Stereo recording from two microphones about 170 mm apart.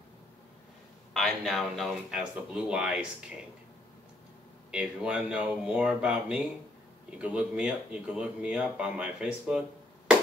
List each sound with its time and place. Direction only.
1.1 s speech: centre (ahead or behind)
4.6 s speech: 5° right (ahead or behind)